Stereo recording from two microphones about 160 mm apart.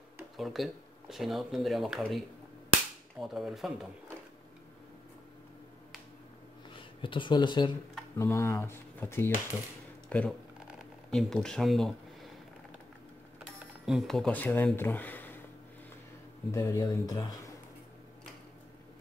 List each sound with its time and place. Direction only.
0.4 s speech: centre (ahead or behind)
6.7 s speech: 30° left (ahead or behind)
8.2 s speech: 15° left (ahead or behind)
10.8 s a sound: 5° left (ahead or behind)
13.8 s speech: centre (ahead or behind)
16.5 s speech: 20° left (ahead or behind)